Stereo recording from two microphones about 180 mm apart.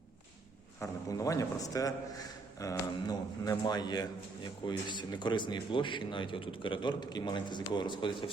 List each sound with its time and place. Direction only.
0.8 s speech: 20° left (ahead or behind)